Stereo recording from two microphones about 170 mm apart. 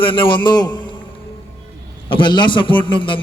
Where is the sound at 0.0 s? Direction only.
30° left (ahead or behind).